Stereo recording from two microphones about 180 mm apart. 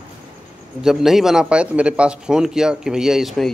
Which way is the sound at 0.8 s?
Centre (ahead or behind).